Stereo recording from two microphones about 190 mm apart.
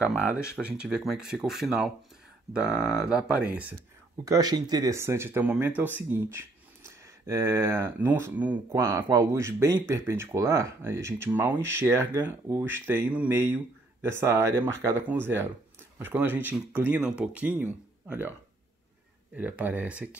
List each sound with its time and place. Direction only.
0.1 s speech: 5° right (ahead or behind)
4.2 s speech: 20° right (ahead or behind)
19.3 s speech: 10° right (ahead or behind)